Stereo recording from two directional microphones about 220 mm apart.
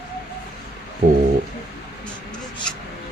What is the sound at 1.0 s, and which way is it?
Speech, 35° right (ahead or behind).